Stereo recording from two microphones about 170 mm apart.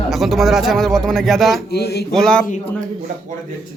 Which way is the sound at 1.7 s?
70° left (ahead or behind).